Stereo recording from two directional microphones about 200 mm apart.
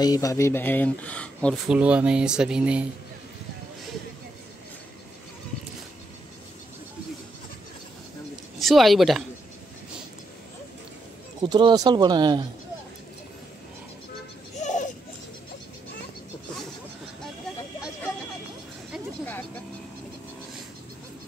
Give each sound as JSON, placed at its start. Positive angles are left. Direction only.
{"t": 0.0, "sound": "speech", "side_deg": 15}
{"t": 8.5, "sound": "speech", "side_deg": 0}
{"t": 11.4, "sound": "speech", "side_deg": -20}
{"t": 14.5, "sound": "a sound", "side_deg": 35}